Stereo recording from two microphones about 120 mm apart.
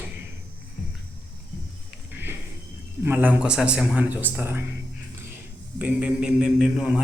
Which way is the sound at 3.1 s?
15° right (ahead or behind).